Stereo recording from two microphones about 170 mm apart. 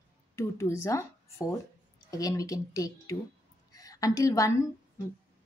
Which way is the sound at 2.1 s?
20° left (ahead or behind).